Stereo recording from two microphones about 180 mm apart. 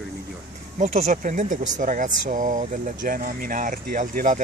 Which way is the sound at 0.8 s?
40° right (ahead or behind).